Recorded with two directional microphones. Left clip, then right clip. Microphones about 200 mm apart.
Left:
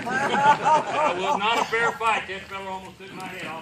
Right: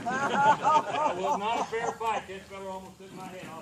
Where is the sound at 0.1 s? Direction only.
55° left (ahead or behind).